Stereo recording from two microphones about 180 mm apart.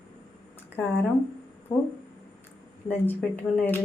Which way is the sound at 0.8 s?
10° left (ahead or behind).